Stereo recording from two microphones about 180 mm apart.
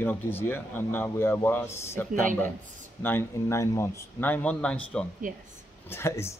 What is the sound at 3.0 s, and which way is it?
A man's voice, 15° left (ahead or behind).